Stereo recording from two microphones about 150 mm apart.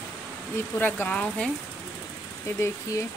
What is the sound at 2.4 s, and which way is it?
Speech, 20° left (ahead or behind).